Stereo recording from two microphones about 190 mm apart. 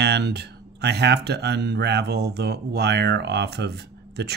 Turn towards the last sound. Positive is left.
turn(degrees=-60)  # may be behind; listen again after turning